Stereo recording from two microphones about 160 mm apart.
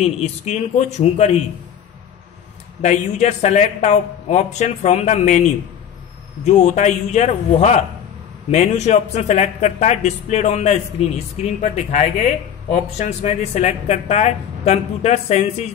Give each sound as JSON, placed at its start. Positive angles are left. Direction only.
{"t": 0.0, "sound": "a man's voice", "side_deg": 40}
{"t": 2.8, "sound": "speech", "side_deg": 45}
{"t": 6.4, "sound": "speech", "side_deg": 50}